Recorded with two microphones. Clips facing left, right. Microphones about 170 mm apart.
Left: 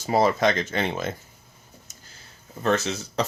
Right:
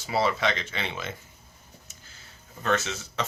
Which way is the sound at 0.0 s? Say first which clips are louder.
Left 5 dB; 45° left (ahead or behind).